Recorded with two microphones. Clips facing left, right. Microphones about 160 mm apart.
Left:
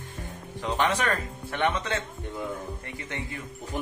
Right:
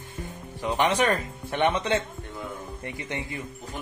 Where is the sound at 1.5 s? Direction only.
20° right (ahead or behind).